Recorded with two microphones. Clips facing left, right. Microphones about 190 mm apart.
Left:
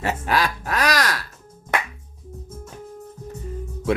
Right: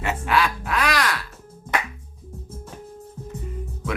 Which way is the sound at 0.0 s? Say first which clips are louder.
Even; 40° left (ahead or behind).